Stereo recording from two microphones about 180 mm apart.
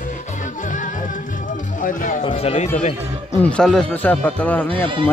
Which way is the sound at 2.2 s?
35° left (ahead or behind).